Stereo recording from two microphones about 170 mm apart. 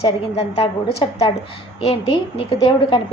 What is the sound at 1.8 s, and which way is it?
A woman's voice, 35° left (ahead or behind).